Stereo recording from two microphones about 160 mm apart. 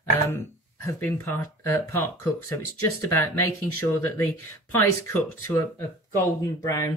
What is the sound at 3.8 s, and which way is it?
Speech, 15° left (ahead or behind).